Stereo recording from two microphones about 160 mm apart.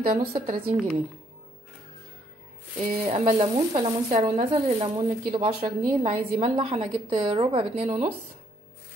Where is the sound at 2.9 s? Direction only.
35° right (ahead or behind).